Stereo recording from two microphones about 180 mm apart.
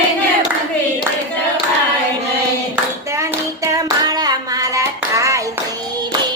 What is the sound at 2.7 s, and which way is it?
Clapping, 15° right (ahead or behind).